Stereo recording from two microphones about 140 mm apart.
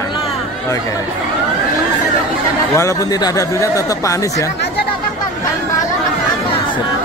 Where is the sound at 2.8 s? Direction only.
20° left (ahead or behind).